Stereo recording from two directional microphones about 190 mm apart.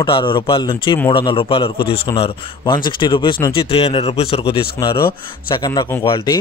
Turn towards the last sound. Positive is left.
turn(degrees=25)  # may be behind; listen again after turning